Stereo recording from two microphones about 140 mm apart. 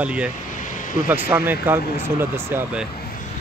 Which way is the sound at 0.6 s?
70° left (ahead or behind).